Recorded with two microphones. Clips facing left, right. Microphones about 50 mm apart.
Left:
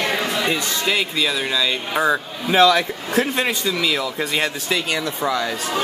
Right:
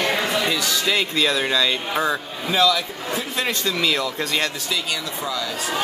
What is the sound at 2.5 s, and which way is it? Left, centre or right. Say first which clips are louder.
Speech: left 5 dB; left.